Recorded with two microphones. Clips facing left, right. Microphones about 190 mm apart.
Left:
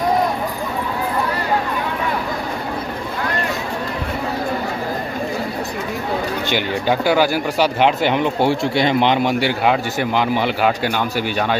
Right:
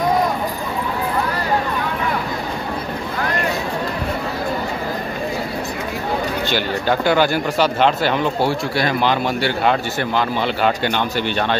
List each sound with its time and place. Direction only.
6.5 s speech: 10° left (ahead or behind)